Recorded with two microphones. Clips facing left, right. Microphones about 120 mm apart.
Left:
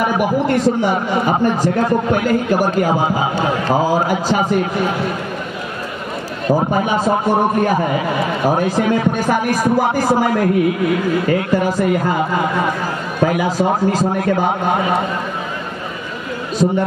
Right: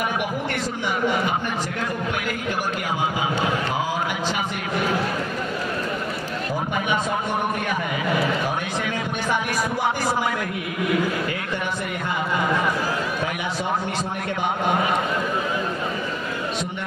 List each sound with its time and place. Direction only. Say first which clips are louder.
0.0 s a man's voice: left 9 dB; 35° left (ahead or behind)
6.5 s a man's voice: left 9 dB; 35° left (ahead or behind)
13.2 s a man's voice: left 10 dB; 40° left (ahead or behind)